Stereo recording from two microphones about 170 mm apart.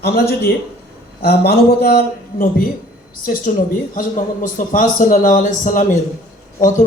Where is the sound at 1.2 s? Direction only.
70° left (ahead or behind).